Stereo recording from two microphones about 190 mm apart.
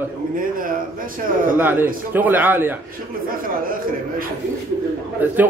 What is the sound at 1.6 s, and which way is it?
Speech, 10° right (ahead or behind).